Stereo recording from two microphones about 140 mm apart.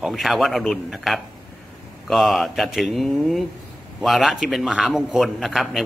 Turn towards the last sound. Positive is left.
turn(degrees=0)  # may be behind; listen again after turning